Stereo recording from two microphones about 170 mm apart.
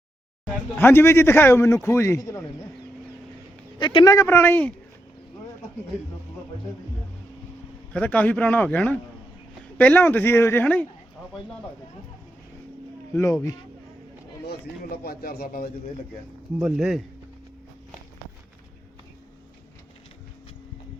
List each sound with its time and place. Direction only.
0.8 s a man's voice: 15° left (ahead or behind)
3.8 s a man's voice: 25° left (ahead or behind); by 4.7 s 10° left (ahead or behind)
7.9 s a man's voice: 10° left (ahead or behind)
13.1 s a man's voice: 20° left (ahead or behind)
14.8 s speech: 60° left (ahead or behind)
16.6 s speech: 5° right (ahead or behind)